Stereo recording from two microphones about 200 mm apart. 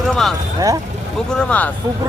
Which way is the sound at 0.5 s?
15° right (ahead or behind).